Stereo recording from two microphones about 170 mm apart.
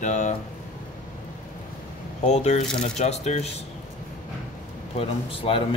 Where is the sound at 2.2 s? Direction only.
40° left (ahead or behind).